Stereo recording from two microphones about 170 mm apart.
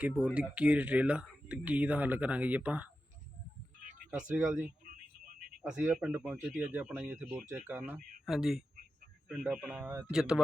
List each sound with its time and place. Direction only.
0.0 s speech: 10° right (ahead or behind)
4.4 s speech: 5° right (ahead or behind)
4.6 s a sound: 55° right (ahead or behind)
5.6 s speech: 5° right (ahead or behind)